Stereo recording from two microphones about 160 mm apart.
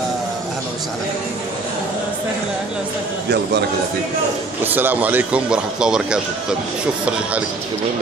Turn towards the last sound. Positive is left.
turn(degrees=-5)  # may be behind; listen again after turning